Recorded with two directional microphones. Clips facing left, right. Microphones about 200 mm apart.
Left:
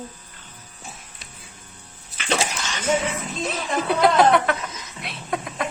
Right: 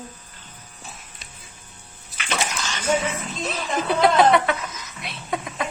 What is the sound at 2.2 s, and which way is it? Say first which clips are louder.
Dog: left 3 dB; 30° left (ahead or behind).